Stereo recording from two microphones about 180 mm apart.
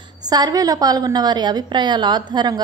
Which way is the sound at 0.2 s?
20° right (ahead or behind).